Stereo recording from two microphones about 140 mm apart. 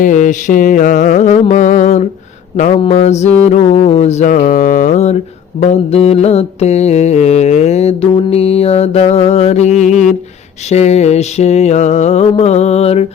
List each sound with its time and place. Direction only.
0.0 s music: 65° left (ahead or behind)
2.7 s speech: 45° left (ahead or behind)
9.9 s a sound: centre (ahead or behind)
10.7 s speech: 50° left (ahead or behind)